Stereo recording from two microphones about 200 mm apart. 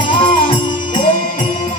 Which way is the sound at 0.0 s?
25° left (ahead or behind).